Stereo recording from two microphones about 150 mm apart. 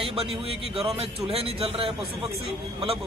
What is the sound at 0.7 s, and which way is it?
A man's voice, 40° right (ahead or behind).